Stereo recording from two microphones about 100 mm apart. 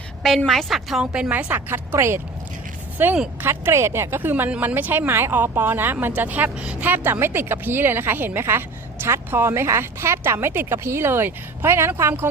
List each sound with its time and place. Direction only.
0.2 s a woman's voice: centre (ahead or behind); by 12.3 s 25° right (ahead or behind)